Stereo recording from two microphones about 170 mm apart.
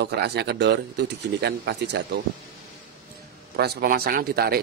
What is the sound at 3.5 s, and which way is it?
Speech, 65° right (ahead or behind).